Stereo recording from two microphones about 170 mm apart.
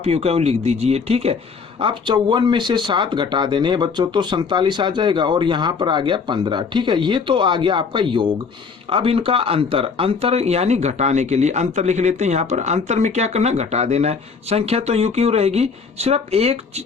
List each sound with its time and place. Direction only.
0.0 s speech: 35° right (ahead or behind)